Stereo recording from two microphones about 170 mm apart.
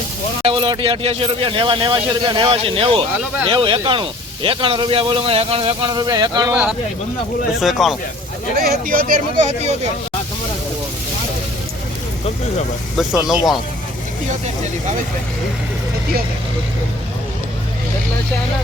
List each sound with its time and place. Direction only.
0.4 s a man's voice: 30° right (ahead or behind)
6.5 s speech: 10° right (ahead or behind)
8.5 s speech: 60° right (ahead or behind)
13.0 s speech: 5° right (ahead or behind)